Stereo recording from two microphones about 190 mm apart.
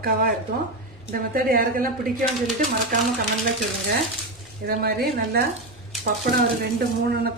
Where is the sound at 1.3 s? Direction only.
50° right (ahead or behind).